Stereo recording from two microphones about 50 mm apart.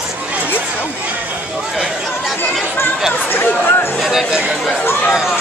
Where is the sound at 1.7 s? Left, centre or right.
Centre.